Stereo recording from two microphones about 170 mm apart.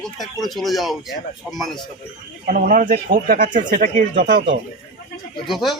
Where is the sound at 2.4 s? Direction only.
55° right (ahead or behind).